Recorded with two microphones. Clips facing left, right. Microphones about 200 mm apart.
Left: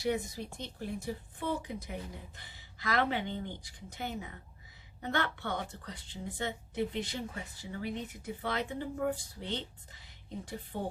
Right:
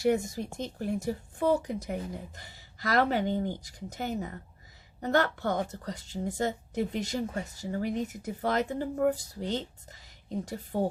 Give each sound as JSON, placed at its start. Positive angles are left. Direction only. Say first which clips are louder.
{"t": 0.0, "sound": "a woman's voice", "louder": "right 6 dB", "side_deg": -45}